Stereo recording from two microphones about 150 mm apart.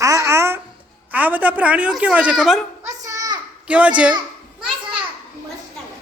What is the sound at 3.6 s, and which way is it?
Speech, 10° right (ahead or behind).